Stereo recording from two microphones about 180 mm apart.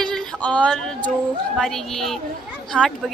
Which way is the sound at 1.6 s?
Centre (ahead or behind).